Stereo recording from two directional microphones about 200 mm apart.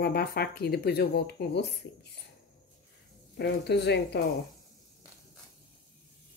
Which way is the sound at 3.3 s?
55° left (ahead or behind).